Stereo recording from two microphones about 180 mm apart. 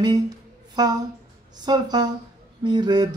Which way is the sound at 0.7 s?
20° right (ahead or behind).